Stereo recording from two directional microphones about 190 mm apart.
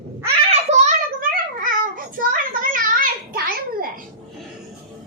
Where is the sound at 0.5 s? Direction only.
35° right (ahead or behind).